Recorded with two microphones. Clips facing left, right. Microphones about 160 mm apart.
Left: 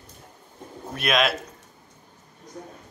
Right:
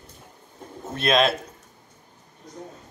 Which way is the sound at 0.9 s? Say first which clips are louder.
Right 3 dB; 25° right (ahead or behind).